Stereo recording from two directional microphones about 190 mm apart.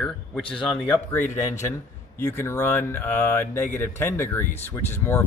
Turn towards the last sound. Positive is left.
turn(degrees=10)  # may be behind; listen again after turning